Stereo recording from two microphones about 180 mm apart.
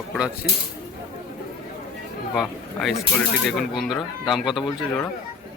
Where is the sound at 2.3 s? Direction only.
Centre (ahead or behind).